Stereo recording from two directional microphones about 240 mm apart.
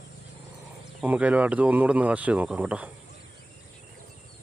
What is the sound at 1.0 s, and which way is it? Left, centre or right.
Speech, centre.